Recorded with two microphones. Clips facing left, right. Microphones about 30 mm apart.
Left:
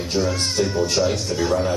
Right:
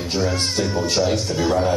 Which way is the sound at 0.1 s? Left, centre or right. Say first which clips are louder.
Even; centre.